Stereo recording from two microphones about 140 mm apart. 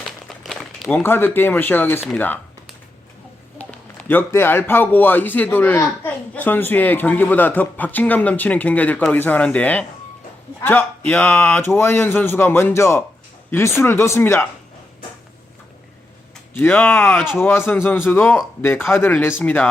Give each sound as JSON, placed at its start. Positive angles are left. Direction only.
{"t": 0.3, "sound": "a man's voice", "side_deg": 0}
{"t": 3.6, "sound": "a man's voice", "side_deg": 10}
{"t": 11.6, "sound": "a man's voice", "side_deg": 15}
{"t": 16.6, "sound": "a man's voice", "side_deg": 15}